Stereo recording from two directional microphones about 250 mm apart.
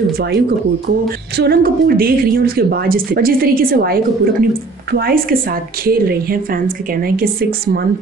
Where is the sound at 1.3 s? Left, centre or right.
Right.